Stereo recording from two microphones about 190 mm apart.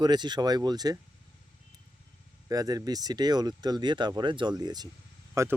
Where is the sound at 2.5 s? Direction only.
20° right (ahead or behind).